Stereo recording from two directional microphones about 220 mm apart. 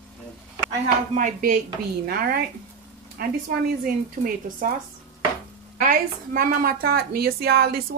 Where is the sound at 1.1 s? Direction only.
40° right (ahead or behind).